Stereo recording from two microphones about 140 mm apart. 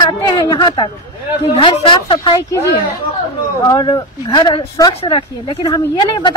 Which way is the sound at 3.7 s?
30° left (ahead or behind).